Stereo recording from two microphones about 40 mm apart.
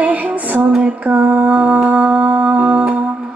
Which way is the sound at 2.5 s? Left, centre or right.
Right.